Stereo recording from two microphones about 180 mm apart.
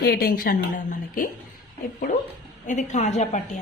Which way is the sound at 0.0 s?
60° left (ahead or behind).